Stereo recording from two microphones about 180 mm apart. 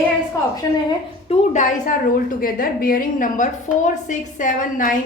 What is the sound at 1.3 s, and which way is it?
A woman's voice, 45° left (ahead or behind).